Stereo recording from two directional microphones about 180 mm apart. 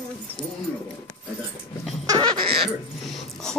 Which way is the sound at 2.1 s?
25° right (ahead or behind).